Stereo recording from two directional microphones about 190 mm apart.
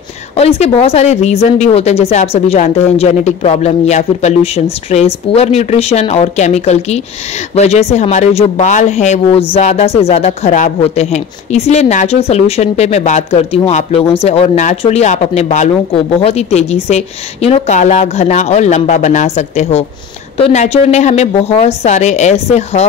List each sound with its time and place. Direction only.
0.4 s speech: 35° left (ahead or behind)